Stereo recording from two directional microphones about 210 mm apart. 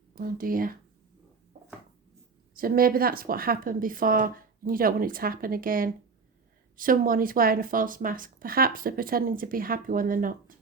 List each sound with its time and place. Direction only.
0.1 s speech: 45° right (ahead or behind)
2.6 s a woman's voice: 45° right (ahead or behind)